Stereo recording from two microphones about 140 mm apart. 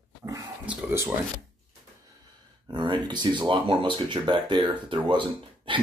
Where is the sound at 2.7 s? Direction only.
35° right (ahead or behind).